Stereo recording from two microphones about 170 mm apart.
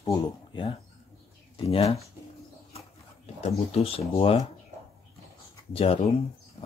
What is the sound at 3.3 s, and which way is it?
Speech, 35° left (ahead or behind).